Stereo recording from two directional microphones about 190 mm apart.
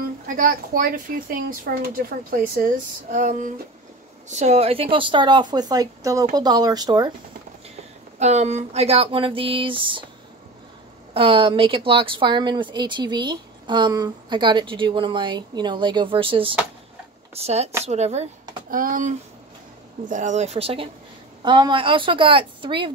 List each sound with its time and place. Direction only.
0.3 s speech: 45° right (ahead or behind); by 7.1 s 20° right (ahead or behind)
8.2 s speech: 35° right (ahead or behind)
11.1 s speech: 25° right (ahead or behind)
18.7 s speech: 45° right (ahead or behind); by 22.9 s 25° right (ahead or behind)